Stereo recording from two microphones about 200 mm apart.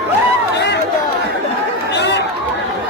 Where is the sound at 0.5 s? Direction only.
60° left (ahead or behind).